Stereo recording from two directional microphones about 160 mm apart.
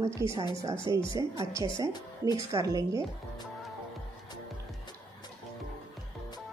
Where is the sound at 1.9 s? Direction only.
25° left (ahead or behind).